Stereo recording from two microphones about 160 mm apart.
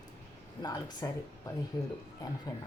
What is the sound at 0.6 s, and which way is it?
Speech, 25° left (ahead or behind).